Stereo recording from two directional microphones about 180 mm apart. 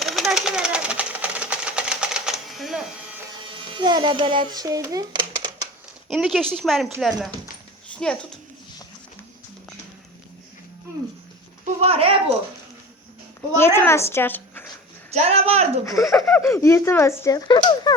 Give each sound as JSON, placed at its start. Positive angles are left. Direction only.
{"t": 0.0, "sound": "a sound", "side_deg": 0}
{"t": 3.5, "sound": "a child's voice", "side_deg": -25}
{"t": 6.1, "sound": "a child's voice", "side_deg": 0}
{"t": 11.6, "sound": "speech", "side_deg": -35}
{"t": 13.6, "sound": "a woman's voice", "side_deg": 15}
{"t": 15.1, "sound": "speech", "side_deg": -35}
{"t": 16.0, "sound": "speech", "side_deg": 0}
{"t": 16.4, "sound": "speech", "side_deg": 15}
{"t": 17.9, "sound": "finger snapping", "side_deg": 20}